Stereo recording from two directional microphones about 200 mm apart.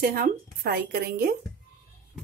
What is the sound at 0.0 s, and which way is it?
Speech, 50° right (ahead or behind).